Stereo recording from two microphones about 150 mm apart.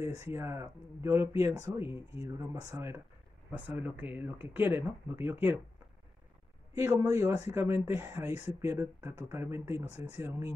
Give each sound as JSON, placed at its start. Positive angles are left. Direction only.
{"t": 0.0, "sound": "speech", "side_deg": -20}
{"t": 6.7, "sound": "speech", "side_deg": -20}